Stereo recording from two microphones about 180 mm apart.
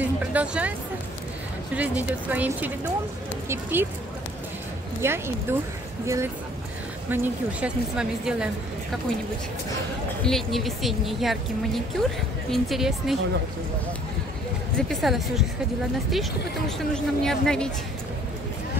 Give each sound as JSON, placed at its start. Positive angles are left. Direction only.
{"t": 0.0, "sound": "a sound", "side_deg": -10}
{"t": 1.8, "sound": "speech", "side_deg": -10}
{"t": 5.0, "sound": "speech", "side_deg": -15}
{"t": 10.2, "sound": "speech", "side_deg": 0}
{"t": 14.8, "sound": "speech", "side_deg": 0}